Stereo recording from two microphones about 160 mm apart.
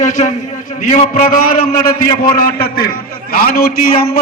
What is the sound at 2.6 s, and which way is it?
A man's voice, 70° left (ahead or behind).